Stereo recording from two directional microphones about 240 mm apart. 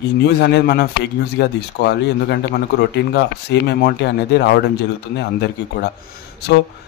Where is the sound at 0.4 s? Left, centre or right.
Left.